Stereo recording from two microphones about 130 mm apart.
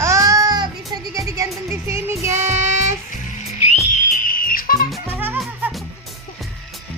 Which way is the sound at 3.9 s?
90° left.